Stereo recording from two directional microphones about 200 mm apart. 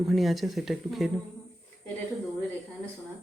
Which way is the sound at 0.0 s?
Centre (ahead or behind).